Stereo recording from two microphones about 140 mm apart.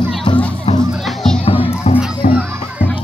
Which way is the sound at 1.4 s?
45° left (ahead or behind).